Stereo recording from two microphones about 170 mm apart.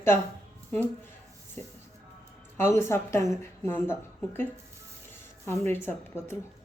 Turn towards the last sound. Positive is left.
turn(degrees=15)  # may be behind; listen again after turning